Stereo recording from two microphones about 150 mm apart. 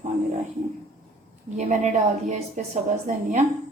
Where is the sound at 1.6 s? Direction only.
50° right (ahead or behind).